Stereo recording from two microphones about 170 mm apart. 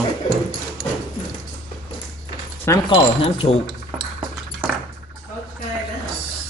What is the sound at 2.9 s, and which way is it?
Speech, 35° left (ahead or behind).